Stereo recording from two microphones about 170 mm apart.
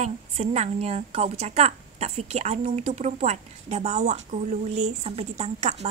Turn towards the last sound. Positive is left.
turn(degrees=-40)  # may be behind; listen again after turning